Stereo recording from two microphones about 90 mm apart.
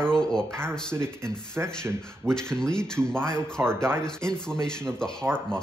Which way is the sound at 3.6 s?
25° right (ahead or behind).